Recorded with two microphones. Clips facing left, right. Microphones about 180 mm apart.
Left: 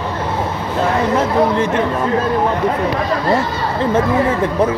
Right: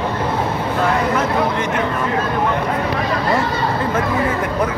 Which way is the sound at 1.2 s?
30° left (ahead or behind).